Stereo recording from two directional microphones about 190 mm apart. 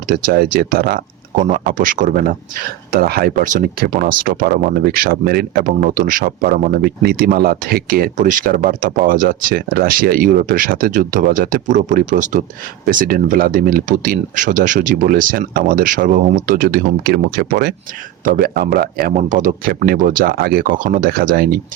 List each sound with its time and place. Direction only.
0.1 s speech: 50° right (ahead or behind)